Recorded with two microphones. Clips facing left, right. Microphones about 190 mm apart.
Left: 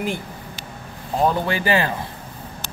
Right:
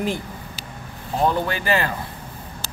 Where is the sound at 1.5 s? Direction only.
15° left (ahead or behind).